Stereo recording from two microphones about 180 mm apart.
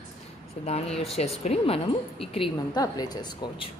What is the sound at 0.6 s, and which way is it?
A woman's voice, 35° left (ahead or behind).